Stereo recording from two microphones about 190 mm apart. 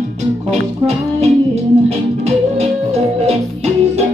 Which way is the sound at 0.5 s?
35° right (ahead or behind).